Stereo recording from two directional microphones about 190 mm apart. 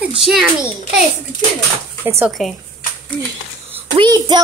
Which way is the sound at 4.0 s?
20° right (ahead or behind).